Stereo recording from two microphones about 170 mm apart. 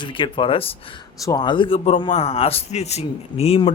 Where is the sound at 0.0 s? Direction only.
30° left (ahead or behind).